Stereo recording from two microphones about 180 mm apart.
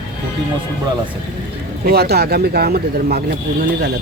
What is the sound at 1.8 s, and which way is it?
Speech, 60° right (ahead or behind).